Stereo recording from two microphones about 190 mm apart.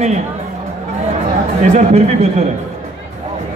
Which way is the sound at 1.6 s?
40° right (ahead or behind).